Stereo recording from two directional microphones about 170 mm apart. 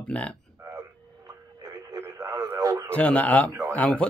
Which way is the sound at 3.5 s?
15° right (ahead or behind).